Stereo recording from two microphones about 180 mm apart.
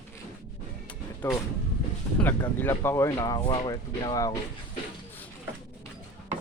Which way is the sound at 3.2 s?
25° left (ahead or behind).